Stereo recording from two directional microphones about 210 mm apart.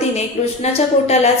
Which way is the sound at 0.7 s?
30° left (ahead or behind).